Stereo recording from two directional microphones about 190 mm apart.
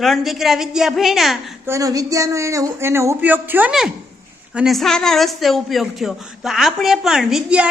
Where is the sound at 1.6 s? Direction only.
15° right (ahead or behind).